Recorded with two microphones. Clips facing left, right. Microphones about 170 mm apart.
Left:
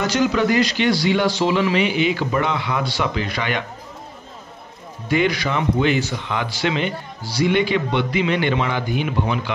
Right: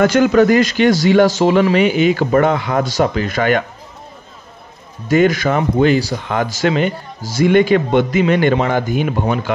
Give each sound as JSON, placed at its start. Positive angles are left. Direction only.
{"t": 0.0, "sound": "speech", "side_deg": -50}
{"t": 5.0, "sound": "speech", "side_deg": -45}